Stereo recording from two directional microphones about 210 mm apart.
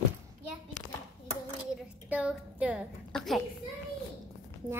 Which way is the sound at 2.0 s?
5° right (ahead or behind).